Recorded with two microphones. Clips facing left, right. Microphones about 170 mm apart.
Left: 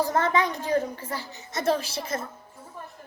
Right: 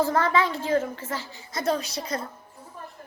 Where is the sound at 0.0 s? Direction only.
20° left (ahead or behind).